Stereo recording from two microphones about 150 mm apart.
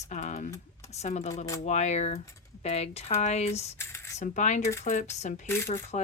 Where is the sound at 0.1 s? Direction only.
55° left (ahead or behind).